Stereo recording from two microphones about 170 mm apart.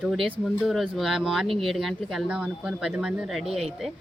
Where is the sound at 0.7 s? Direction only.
Centre (ahead or behind).